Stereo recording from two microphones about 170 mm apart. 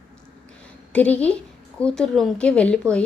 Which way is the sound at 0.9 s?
10° left (ahead or behind).